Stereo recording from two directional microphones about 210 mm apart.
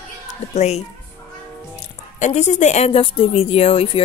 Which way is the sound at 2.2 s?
35° left (ahead or behind).